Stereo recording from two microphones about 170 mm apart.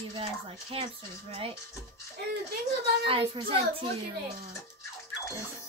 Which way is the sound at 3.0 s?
35° right (ahead or behind).